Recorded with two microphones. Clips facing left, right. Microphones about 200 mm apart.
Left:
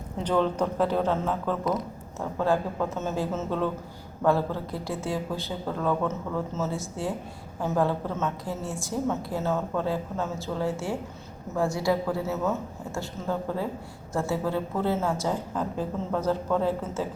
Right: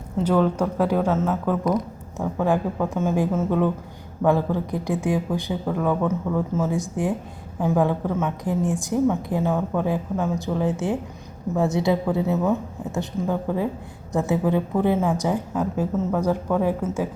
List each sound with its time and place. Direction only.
0.2 s a woman's voice: 5° right (ahead or behind)